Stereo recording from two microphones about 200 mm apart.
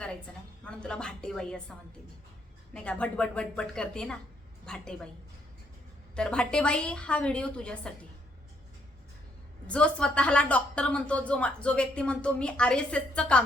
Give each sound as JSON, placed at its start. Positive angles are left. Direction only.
{"t": 0.6, "sound": "speech", "side_deg": 5}
{"t": 2.7, "sound": "speech", "side_deg": 5}
{"t": 6.1, "sound": "speech", "side_deg": 5}
{"t": 9.6, "sound": "speech", "side_deg": 5}